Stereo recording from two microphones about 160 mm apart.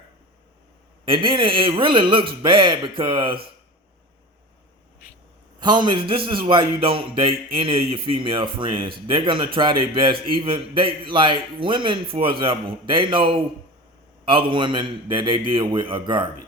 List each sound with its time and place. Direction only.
1.0 s a man's voice: 30° right (ahead or behind)
5.5 s a man's voice: 25° right (ahead or behind)